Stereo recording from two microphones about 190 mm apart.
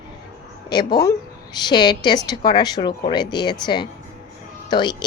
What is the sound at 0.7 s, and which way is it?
A woman's voice, 20° left (ahead or behind).